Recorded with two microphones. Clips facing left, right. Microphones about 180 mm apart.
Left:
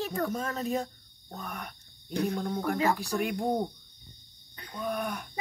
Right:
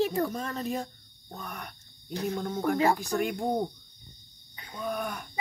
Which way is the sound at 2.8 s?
35° right (ahead or behind).